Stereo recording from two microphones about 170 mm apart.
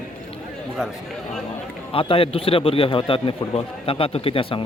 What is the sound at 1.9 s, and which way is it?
A man's voice, 35° left (ahead or behind).